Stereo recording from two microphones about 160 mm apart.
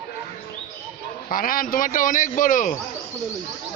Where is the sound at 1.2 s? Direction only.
60° left (ahead or behind).